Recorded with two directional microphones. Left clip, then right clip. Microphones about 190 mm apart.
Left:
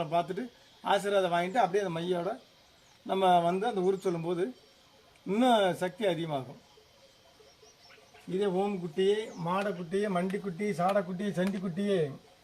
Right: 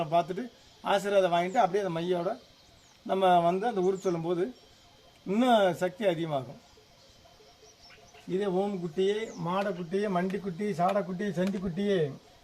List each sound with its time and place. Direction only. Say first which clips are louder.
0.0 s a man's voice: right 3 dB; 10° right (ahead or behind)
8.4 s a man's voice: even; 10° right (ahead or behind)